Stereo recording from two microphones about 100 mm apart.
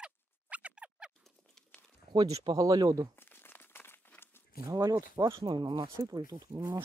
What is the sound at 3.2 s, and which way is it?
Crumpling, 20° left (ahead or behind).